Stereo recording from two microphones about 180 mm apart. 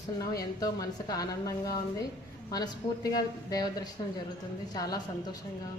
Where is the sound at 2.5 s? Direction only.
20° left (ahead or behind).